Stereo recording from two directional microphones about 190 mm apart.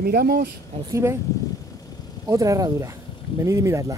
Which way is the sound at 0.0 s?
55° right (ahead or behind).